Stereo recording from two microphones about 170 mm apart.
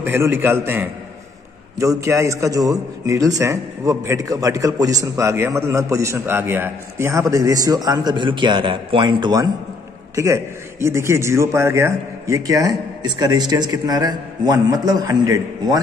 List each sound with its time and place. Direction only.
0.0 s a man's voice: 15° right (ahead or behind)